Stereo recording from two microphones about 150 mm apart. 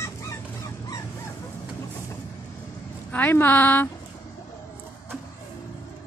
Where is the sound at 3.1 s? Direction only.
10° left (ahead or behind).